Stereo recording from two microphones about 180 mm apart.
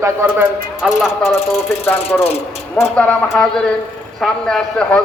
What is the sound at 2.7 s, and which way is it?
A man's voice, 5° left (ahead or behind).